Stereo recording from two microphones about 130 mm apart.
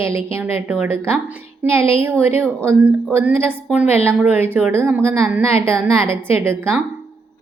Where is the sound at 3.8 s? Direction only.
50° left (ahead or behind).